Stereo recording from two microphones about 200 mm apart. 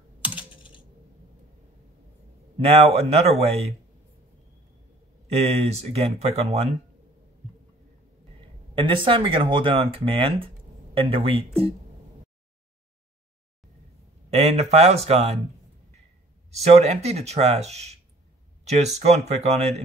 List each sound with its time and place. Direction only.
0.2 s typing: 10° right (ahead or behind)
0.5 s typing: 25° left (ahead or behind)
2.6 s speech: 30° right (ahead or behind)
5.3 s speech: 30° right (ahead or behind)
8.7 s speech: 25° right (ahead or behind)
14.3 s speech: 30° right (ahead or behind)
16.4 s speech: 30° right (ahead or behind)
18.6 s a sound: 35° right (ahead or behind)
18.9 s speech: 35° right (ahead or behind)